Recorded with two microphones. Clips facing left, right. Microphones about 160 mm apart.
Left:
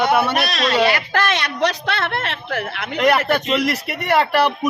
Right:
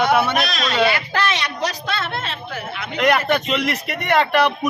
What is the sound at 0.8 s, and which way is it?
Speech, 45° left (ahead or behind).